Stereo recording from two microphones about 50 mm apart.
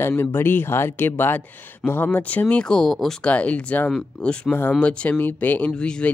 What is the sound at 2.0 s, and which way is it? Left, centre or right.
Speech, left.